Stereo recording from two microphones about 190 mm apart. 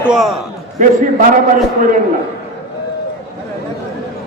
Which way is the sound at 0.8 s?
40° right (ahead or behind).